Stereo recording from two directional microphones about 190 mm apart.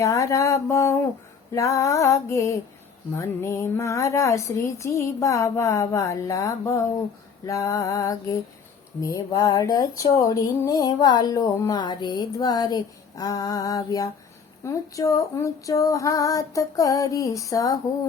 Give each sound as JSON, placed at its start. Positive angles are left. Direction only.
{"t": 0.0, "sound": "speech", "side_deg": 15}